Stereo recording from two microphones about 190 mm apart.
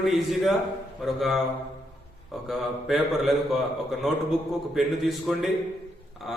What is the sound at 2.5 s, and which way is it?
A man's voice, centre (ahead or behind).